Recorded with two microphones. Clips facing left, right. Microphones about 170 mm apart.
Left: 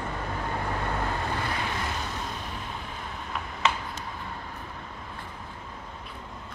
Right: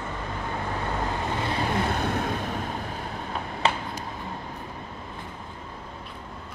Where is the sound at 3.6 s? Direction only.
35° right (ahead or behind).